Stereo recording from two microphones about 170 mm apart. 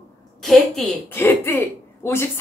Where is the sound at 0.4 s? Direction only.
Centre (ahead or behind).